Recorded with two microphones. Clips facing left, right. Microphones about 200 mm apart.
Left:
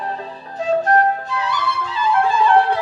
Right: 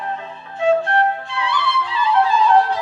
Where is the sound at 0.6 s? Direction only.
40° left (ahead or behind).